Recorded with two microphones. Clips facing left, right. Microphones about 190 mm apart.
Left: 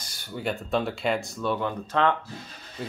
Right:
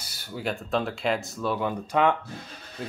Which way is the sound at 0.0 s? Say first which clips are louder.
Left 1 dB; 5° right (ahead or behind).